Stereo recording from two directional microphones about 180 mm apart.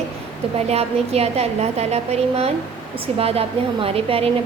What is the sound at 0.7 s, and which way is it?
A woman's voice, 35° right (ahead or behind).